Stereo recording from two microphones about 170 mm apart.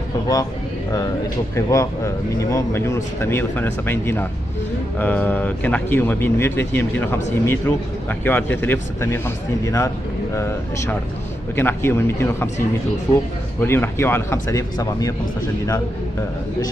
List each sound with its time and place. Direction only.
1.5 s speech: 20° left (ahead or behind)